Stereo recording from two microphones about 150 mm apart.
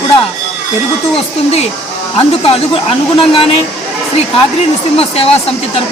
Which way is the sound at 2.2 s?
40° left (ahead or behind).